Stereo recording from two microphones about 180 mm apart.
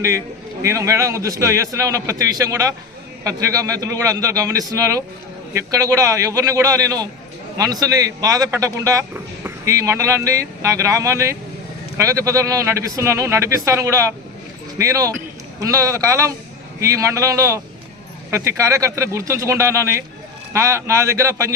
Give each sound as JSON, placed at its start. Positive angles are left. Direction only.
{"t": 0.6, "sound": "a man's voice", "side_deg": -15}